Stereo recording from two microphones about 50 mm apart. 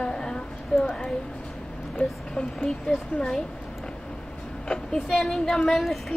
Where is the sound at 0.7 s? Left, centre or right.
Left.